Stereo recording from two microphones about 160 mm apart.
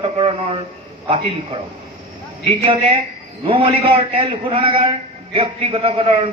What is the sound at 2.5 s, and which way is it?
A man's voice, 40° right (ahead or behind).